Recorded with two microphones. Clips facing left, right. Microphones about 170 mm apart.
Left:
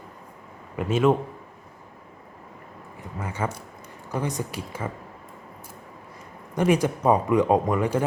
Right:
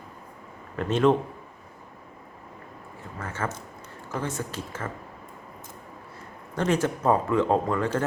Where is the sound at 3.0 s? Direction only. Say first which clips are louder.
Left 3 dB; 15° left (ahead or behind).